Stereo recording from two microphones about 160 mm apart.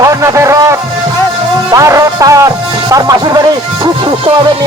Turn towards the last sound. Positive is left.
turn(degrees=-20)  # may be behind; listen again after turning